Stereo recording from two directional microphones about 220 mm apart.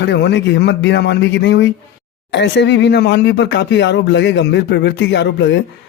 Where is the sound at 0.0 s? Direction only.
50° left (ahead or behind).